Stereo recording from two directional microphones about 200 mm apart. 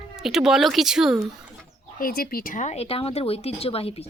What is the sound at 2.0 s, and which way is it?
Speech, 45° left (ahead or behind).